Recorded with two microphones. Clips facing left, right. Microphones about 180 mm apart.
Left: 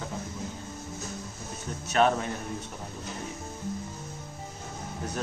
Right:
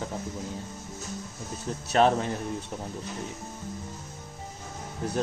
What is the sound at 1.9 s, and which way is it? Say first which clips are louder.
Speech: right 2 dB; 30° right (ahead or behind).